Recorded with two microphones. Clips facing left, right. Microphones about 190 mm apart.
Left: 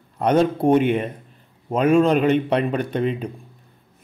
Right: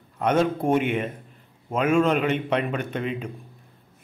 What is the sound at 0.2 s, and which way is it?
A man's voice, 35° left (ahead or behind).